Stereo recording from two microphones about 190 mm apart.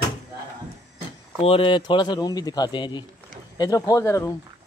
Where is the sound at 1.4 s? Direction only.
30° left (ahead or behind).